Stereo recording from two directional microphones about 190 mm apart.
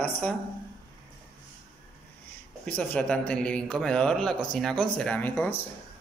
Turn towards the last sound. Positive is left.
turn(degrees=10)  # may be behind; listen again after turning